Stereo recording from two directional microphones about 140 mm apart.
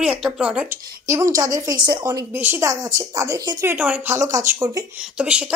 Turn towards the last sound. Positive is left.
turn(degrees=-5)  # may be behind; listen again after turning